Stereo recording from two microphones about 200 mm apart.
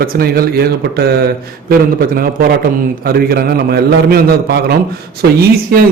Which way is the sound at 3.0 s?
45° right (ahead or behind).